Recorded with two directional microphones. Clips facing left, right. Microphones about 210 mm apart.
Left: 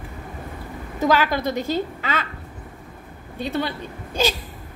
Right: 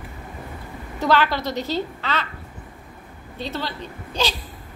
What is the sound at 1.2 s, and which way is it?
Speech, 50° left (ahead or behind).